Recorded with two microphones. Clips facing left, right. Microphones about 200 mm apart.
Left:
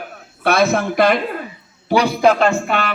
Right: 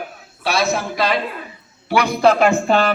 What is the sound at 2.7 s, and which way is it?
Speech, 35° right (ahead or behind).